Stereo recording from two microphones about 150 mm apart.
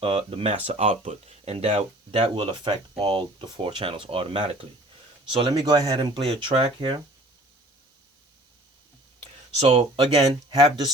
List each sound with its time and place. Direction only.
0.0 s speech: 40° right (ahead or behind)
9.2 s speech: 40° right (ahead or behind)